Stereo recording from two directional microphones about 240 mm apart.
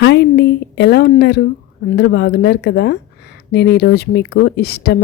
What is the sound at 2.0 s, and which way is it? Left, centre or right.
Speech, left.